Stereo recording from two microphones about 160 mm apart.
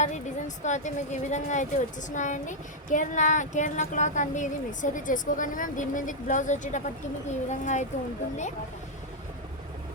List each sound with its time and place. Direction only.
0.0 s speech: 50° left (ahead or behind)